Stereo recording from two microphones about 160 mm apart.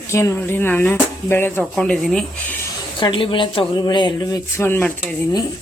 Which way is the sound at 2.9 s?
30° left (ahead or behind).